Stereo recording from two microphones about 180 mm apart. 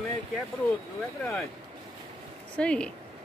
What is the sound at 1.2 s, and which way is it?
Speech, centre (ahead or behind).